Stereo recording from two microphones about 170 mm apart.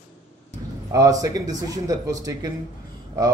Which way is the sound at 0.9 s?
20° right (ahead or behind).